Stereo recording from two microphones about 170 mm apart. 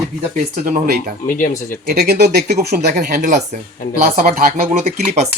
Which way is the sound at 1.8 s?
65° right (ahead or behind).